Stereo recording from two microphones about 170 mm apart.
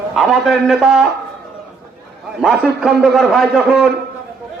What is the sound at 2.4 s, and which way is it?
Speech, centre (ahead or behind).